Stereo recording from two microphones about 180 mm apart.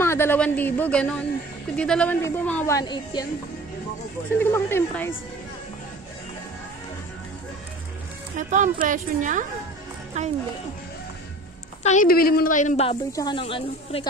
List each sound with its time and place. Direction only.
0.0 s a woman's voice: 15° left (ahead or behind)
4.4 s a woman's voice: 10° left (ahead or behind)
8.4 s a woman's voice: 45° right (ahead or behind)
11.8 s a woman's voice: 45° left (ahead or behind)
13.1 s speech: 25° left (ahead or behind)